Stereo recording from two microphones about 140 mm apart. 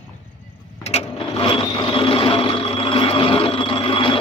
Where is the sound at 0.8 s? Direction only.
50° left (ahead or behind).